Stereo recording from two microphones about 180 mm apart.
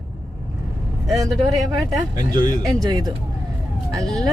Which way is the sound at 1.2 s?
20° right (ahead or behind).